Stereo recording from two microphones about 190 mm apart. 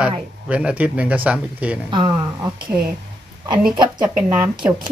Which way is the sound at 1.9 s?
25° right (ahead or behind).